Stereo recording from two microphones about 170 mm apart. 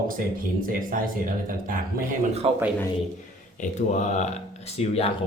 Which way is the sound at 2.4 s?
35° right (ahead or behind).